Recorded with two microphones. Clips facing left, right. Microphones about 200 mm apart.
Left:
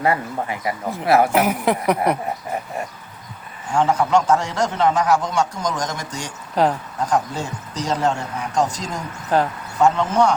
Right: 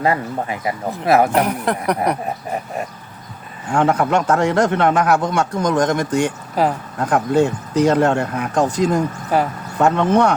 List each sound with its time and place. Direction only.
0.0 s speech: 25° right (ahead or behind)
1.3 s a sound: 5° left (ahead or behind)
3.7 s speech: 60° right (ahead or behind)
6.6 s a sound: 5° right (ahead or behind)
7.0 s speech: 60° right (ahead or behind)
9.3 s speech: 10° right (ahead or behind)
9.7 s speech: 60° right (ahead or behind)